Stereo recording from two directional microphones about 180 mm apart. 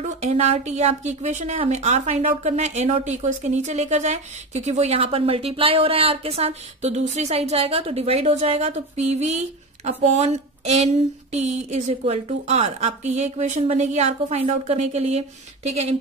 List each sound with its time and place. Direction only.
0.0 s a woman's voice: 40° right (ahead or behind)